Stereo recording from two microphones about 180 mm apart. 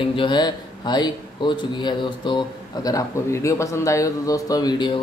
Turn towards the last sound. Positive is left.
turn(degrees=25)  # may be behind; listen again after turning